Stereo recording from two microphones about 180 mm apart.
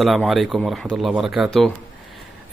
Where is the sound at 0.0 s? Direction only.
Centre (ahead or behind).